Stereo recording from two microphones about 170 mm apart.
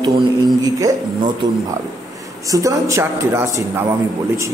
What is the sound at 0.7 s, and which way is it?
Speech, 20° right (ahead or behind).